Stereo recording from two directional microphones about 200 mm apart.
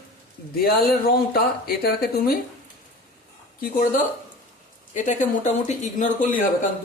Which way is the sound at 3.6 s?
45° left (ahead or behind).